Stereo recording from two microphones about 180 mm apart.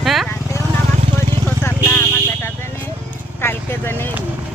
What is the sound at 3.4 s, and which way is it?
Vehicle, 10° left (ahead or behind).